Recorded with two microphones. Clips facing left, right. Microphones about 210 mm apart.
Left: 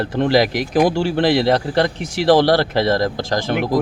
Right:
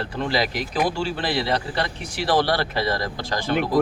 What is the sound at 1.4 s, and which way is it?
Speech, 45° left (ahead or behind).